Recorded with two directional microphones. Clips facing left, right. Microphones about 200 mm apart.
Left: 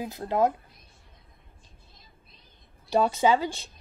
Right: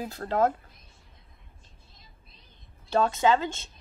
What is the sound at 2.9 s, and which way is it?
Speech, 10° left (ahead or behind).